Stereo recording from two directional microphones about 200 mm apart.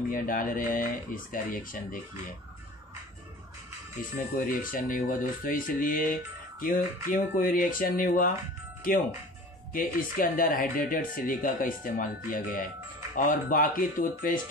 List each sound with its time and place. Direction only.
0.1 s speech: 45° left (ahead or behind)
4.1 s speech: 45° left (ahead or behind)
9.7 s speech: 45° left (ahead or behind)